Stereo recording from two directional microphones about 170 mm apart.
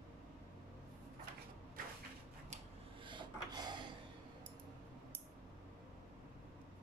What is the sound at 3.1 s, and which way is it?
Rub, 25° right (ahead or behind).